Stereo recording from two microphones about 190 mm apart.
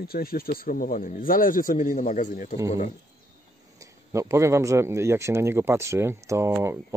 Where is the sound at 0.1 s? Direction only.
50° left (ahead or behind).